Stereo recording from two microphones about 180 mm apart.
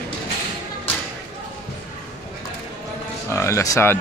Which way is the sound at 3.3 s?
15° left (ahead or behind).